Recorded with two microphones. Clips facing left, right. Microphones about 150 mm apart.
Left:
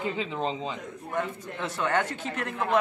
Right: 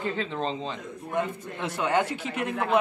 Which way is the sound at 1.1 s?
15° right (ahead or behind).